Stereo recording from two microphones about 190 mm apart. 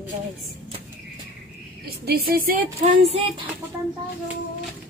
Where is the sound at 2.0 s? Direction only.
55° right (ahead or behind).